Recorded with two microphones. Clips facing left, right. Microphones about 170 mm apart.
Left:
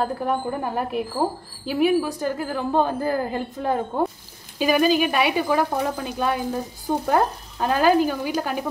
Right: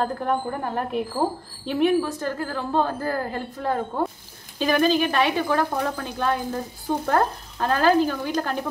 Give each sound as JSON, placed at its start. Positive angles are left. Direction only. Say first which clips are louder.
{"t": 0.0, "sound": "a woman's voice", "louder": "left 1 dB", "side_deg": 5}